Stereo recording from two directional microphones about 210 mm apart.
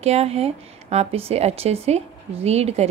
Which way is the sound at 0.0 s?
30° right (ahead or behind).